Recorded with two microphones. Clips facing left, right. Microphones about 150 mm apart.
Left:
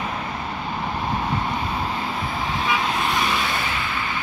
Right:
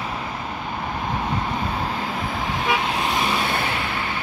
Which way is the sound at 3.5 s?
60° right (ahead or behind).